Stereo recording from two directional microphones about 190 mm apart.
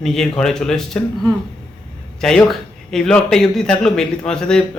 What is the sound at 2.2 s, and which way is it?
A man's voice, 5° left (ahead or behind).